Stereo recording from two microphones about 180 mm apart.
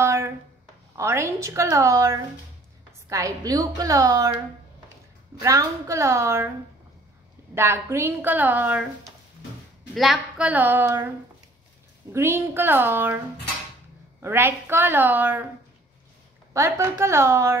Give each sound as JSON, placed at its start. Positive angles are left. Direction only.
{"t": 0.0, "sound": "a sound", "side_deg": -15}
{"t": 0.9, "sound": "a woman's voice", "side_deg": -15}
{"t": 5.4, "sound": "speech", "side_deg": -15}
{"t": 7.5, "sound": "speech", "side_deg": -15}
{"t": 14.2, "sound": "speech", "side_deg": -15}
{"t": 16.5, "sound": "speech", "side_deg": -15}